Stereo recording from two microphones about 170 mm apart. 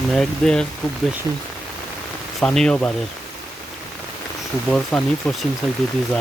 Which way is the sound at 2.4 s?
5° left (ahead or behind).